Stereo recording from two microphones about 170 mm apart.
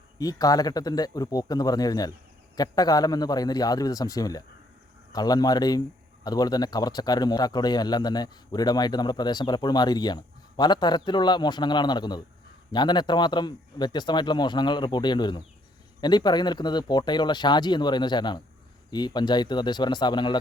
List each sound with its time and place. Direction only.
0.2 s a man's voice: 20° left (ahead or behind)